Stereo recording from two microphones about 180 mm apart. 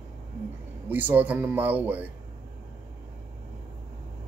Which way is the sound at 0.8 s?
10° right (ahead or behind).